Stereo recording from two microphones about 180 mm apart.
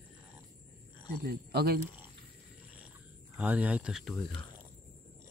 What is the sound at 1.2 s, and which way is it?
Speech, 60° right (ahead or behind).